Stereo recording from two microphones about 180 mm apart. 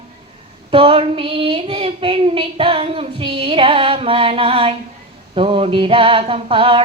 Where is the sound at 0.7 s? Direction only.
30° right (ahead or behind).